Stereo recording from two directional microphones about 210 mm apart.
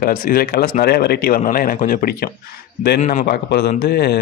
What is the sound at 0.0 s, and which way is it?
Speech, 45° left (ahead or behind).